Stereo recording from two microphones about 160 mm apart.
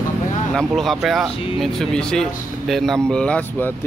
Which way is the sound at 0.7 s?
Centre (ahead or behind).